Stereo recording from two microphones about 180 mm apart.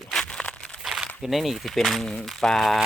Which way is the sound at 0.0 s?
Centre (ahead or behind).